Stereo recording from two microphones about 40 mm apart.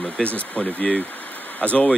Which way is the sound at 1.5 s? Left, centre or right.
Left.